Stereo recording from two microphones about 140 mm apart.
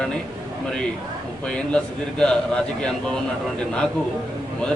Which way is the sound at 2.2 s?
5° left (ahead or behind).